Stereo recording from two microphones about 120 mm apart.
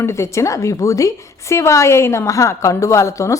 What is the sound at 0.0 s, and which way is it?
A woman's voice, 25° left (ahead or behind).